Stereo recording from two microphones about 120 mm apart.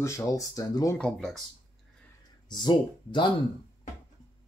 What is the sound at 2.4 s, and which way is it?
Speech, 35° left (ahead or behind).